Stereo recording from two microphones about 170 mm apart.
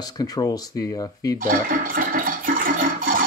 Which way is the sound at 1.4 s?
55° right (ahead or behind).